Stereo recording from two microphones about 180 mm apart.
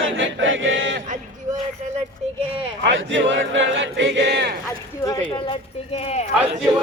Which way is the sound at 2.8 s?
90° right.